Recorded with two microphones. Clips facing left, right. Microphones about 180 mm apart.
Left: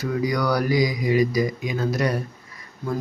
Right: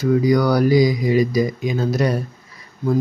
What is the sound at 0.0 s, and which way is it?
Speech, 25° right (ahead or behind).